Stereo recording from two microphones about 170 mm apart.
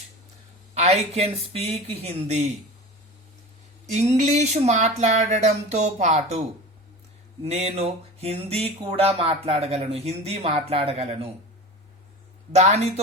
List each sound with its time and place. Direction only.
0.7 s speech: 40° right (ahead or behind)
3.9 s speech: 40° right (ahead or behind)
7.4 s speech: 40° right (ahead or behind)
12.5 s speech: 40° right (ahead or behind)